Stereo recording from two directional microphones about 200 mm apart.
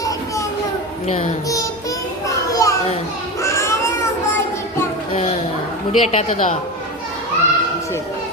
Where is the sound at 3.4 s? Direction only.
15° left (ahead or behind).